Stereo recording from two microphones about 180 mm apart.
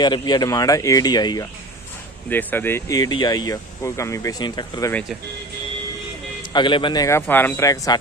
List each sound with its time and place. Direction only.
0.0 s speech: 25° left (ahead or behind)
2.2 s speech: 10° left (ahead or behind)
6.5 s speech: 25° left (ahead or behind)